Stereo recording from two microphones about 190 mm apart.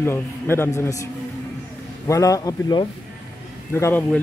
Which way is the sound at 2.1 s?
15° left (ahead or behind).